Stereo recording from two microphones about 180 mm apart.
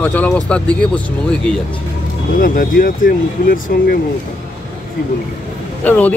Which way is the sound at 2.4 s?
50° left (ahead or behind).